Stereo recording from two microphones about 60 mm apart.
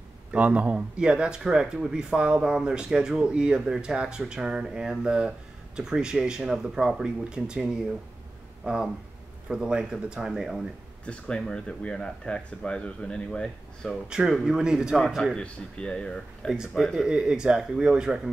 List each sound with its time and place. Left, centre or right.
0.3 s speech: right
8.6 s speech: centre
11.1 s speech: centre
14.0 s speech: centre
15.3 s speech: centre
16.7 s speech: centre